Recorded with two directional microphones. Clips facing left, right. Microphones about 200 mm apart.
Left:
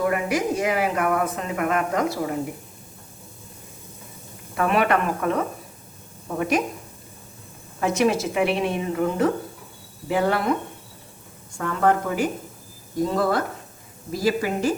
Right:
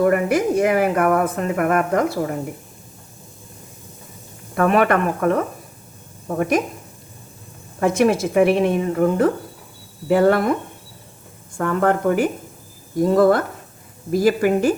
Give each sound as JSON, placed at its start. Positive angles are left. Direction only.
{"t": 0.0, "sound": "speech", "side_deg": -50}
{"t": 4.5, "sound": "speech", "side_deg": -50}
{"t": 7.8, "sound": "speech", "side_deg": -55}
{"t": 11.5, "sound": "speech", "side_deg": -55}